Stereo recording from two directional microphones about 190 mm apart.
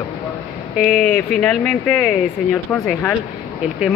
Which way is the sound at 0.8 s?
5° left (ahead or behind).